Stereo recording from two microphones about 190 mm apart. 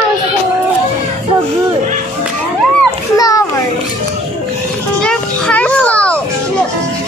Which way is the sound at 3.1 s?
20° left (ahead or behind).